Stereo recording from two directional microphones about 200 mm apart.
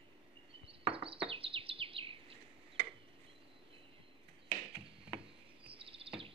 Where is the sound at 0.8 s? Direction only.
25° right (ahead or behind).